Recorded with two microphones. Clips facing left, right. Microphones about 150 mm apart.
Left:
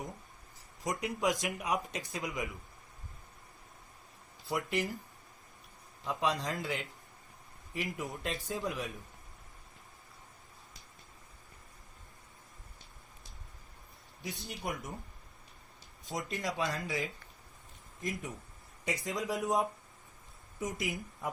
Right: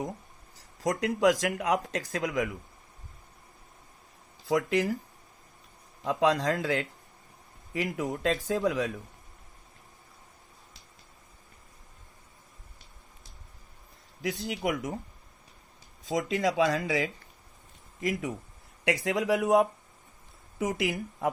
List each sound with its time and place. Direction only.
0.5 s speech: 90° right
4.4 s speech: 90° right
6.1 s speech: 90° right
14.2 s speech: 90° right
16.0 s speech: 90° right